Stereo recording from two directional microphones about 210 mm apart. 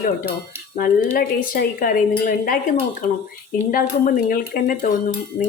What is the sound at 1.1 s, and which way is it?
A woman's voice, 45° left (ahead or behind).